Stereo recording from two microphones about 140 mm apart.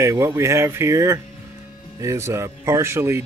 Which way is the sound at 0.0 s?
25° right (ahead or behind).